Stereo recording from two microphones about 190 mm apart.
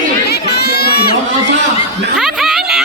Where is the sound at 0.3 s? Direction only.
60° left (ahead or behind).